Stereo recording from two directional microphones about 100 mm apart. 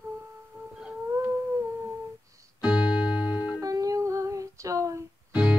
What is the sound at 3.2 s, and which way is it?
Music, 45° left (ahead or behind).